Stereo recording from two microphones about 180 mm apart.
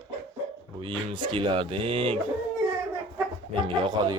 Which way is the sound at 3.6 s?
25° right (ahead or behind).